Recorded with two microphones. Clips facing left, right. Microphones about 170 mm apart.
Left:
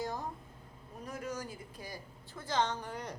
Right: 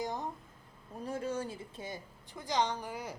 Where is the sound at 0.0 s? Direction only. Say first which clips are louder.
Right 1 dB; 20° right (ahead or behind).